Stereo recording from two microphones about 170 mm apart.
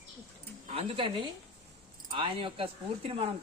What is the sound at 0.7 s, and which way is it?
Speech, 35° right (ahead or behind).